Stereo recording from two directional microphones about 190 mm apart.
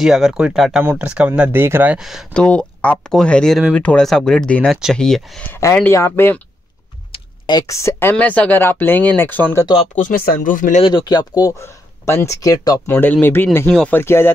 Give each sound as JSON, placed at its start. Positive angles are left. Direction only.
{"t": 0.0, "sound": "speech", "side_deg": 0}
{"t": 5.6, "sound": "speech", "side_deg": 15}
{"t": 7.1, "sound": "speech", "side_deg": 20}
{"t": 9.9, "sound": "speech", "side_deg": 45}
{"t": 10.8, "sound": "speech", "side_deg": 25}